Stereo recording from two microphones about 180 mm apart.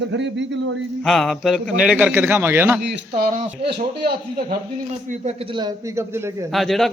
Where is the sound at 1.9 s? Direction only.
10° right (ahead or behind).